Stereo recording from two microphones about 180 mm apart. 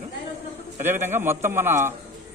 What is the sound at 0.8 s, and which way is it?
Speech, 10° right (ahead or behind).